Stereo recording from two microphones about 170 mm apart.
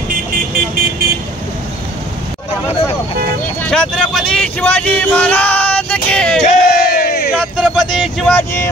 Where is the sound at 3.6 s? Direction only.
5° left (ahead or behind).